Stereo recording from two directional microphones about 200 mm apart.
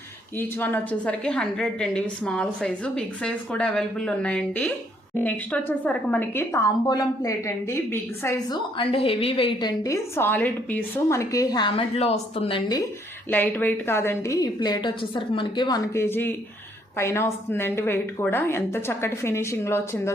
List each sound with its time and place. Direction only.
0.3 s a woman's voice: 10° left (ahead or behind)
13.3 s a woman's voice: 10° left (ahead or behind)